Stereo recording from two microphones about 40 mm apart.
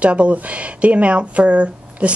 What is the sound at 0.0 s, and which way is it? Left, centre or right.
Speech, right.